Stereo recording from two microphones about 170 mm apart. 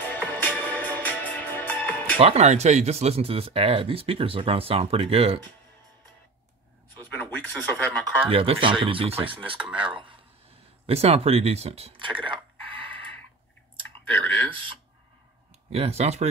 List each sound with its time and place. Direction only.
0.0 s music: 10° left (ahead or behind)
2.1 s speech: 35° right (ahead or behind)
7.1 s a sound: 10° left (ahead or behind)
8.3 s speech: 30° right (ahead or behind)
9.6 s speech: 5° right (ahead or behind)
10.9 s speech: 35° right (ahead or behind)
13.7 s clicking: 30° right (ahead or behind)
14.5 s a sound: 30° right (ahead or behind)
15.7 s speech: 35° right (ahead or behind)